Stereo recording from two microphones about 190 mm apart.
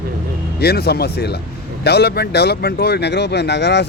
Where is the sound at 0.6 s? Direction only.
55° left (ahead or behind).